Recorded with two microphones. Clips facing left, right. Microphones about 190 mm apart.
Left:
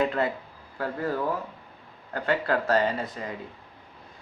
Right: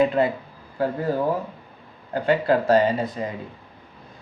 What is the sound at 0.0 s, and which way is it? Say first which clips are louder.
Speech: right 6 dB; 15° right (ahead or behind).